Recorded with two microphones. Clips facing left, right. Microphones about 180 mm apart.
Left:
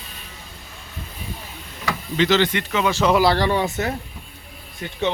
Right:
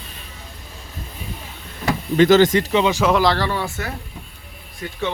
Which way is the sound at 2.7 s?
20° right (ahead or behind).